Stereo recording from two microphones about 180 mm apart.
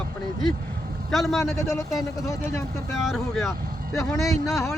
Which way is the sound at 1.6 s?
20° left (ahead or behind).